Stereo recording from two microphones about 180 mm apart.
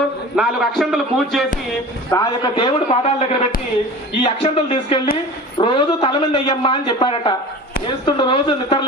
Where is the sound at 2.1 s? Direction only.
20° left (ahead or behind).